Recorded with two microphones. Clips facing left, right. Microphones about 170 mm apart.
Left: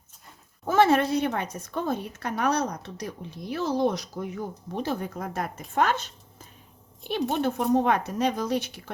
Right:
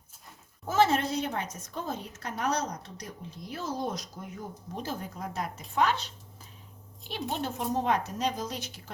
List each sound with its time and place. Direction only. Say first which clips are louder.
0.7 s a woman's voice: left 5 dB; 60° left (ahead or behind)
7.1 s a woman's voice: left 8 dB; 55° left (ahead or behind)